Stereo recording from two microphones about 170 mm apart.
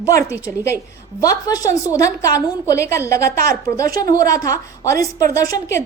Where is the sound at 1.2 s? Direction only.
20° left (ahead or behind).